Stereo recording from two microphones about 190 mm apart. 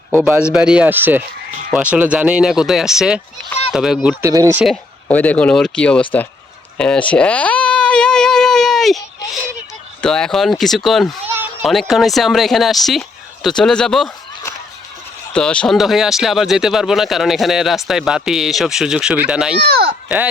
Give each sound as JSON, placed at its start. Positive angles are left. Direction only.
{"t": 0.5, "sound": "speech", "side_deg": -5}
{"t": 4.2, "sound": "speech", "side_deg": -15}
{"t": 5.0, "sound": "speech", "side_deg": 10}
{"t": 6.7, "sound": "a sound", "side_deg": 5}
{"t": 10.0, "sound": "speech", "side_deg": 5}
{"t": 15.3, "sound": "speech", "side_deg": 5}
{"t": 19.5, "sound": "speech", "side_deg": -55}
{"t": 20.1, "sound": "speech", "side_deg": -5}